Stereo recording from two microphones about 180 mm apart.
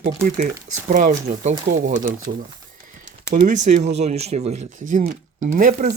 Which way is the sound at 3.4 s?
40° right (ahead or behind).